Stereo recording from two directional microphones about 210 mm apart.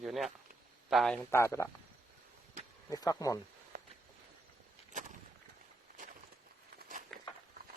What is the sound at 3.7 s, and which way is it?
Walk, 45° right (ahead or behind).